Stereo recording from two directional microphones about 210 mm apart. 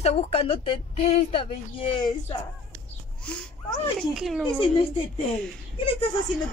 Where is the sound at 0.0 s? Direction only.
30° left (ahead or behind).